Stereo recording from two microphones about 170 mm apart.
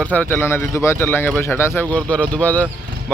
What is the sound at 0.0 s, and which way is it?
Speech, 10° left (ahead or behind).